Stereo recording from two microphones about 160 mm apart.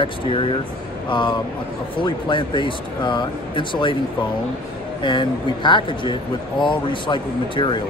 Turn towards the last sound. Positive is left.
turn(degrees=30)  # may be behind; listen again after turning